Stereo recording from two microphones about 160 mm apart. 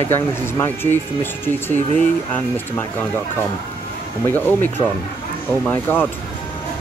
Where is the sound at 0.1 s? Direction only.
15° left (ahead or behind).